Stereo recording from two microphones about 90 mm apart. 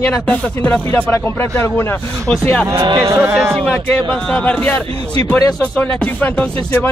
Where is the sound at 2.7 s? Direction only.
60° right (ahead or behind).